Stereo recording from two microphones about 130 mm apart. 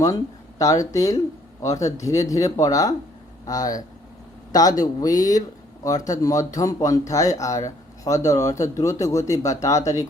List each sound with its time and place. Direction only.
0.6 s speech: 25° left (ahead or behind)